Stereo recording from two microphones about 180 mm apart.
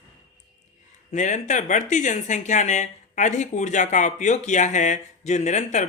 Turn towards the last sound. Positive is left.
turn(degrees=40)  # may be behind; listen again after turning